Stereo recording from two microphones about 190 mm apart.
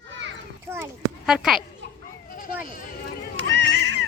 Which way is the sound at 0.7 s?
10° right (ahead or behind).